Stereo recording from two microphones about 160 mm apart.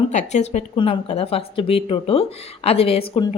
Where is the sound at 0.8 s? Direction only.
35° left (ahead or behind).